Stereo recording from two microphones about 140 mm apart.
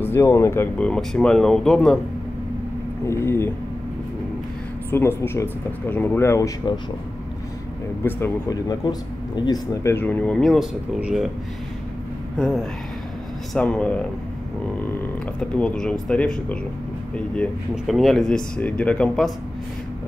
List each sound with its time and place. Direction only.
0.0 s speech: 20° left (ahead or behind)
0.7 s speech: 5° left (ahead or behind)
3.1 s speech: 20° left (ahead or behind)
4.9 s speech: 15° left (ahead or behind)
8.0 s speech: 15° left (ahead or behind)
8.6 s speech: 30° left (ahead or behind)
9.8 s speech: 15° left (ahead or behind); by 11.2 s 5° right (ahead or behind)
12.4 s speech: 5° left (ahead or behind)
15.5 s speech: 5° left (ahead or behind)